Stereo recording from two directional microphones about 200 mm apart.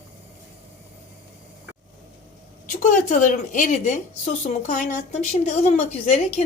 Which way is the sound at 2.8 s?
40° left (ahead or behind).